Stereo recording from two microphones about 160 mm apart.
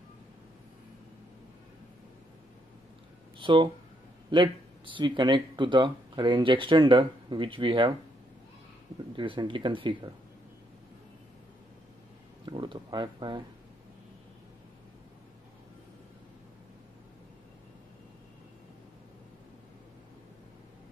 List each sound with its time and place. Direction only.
3.3 s speech: 30° right (ahead or behind)
9.1 s speech: 30° right (ahead or behind)
12.4 s speech: 30° right (ahead or behind)